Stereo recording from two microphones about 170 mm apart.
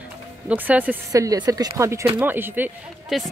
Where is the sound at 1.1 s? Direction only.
20° right (ahead or behind).